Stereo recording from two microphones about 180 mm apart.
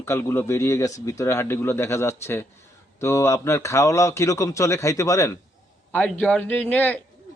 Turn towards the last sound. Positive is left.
turn(degrees=10)  # may be behind; listen again after turning